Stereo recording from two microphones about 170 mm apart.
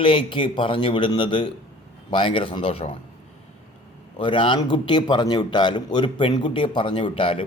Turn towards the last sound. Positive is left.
turn(degrees=30)  # may be behind; listen again after turning